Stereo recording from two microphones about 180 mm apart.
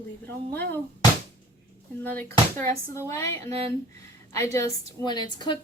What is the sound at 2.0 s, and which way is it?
A woman's voice, 10° left (ahead or behind).